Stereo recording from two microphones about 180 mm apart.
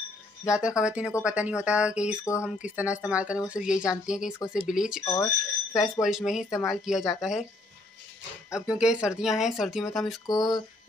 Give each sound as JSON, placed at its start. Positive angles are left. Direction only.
{"t": 0.5, "sound": "speech", "side_deg": -5}
{"t": 5.0, "sound": "speech", "side_deg": 15}
{"t": 5.8, "sound": "speech", "side_deg": 0}
{"t": 8.5, "sound": "speech", "side_deg": -5}
{"t": 10.2, "sound": "a sound", "side_deg": 20}